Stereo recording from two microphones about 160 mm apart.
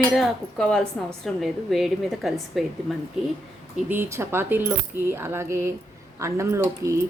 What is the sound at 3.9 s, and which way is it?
Speech, 15° right (ahead or behind).